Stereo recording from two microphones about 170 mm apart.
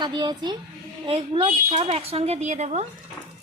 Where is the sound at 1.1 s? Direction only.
35° right (ahead or behind).